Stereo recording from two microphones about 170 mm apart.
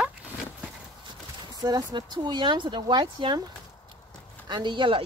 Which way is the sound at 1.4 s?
20° right (ahead or behind).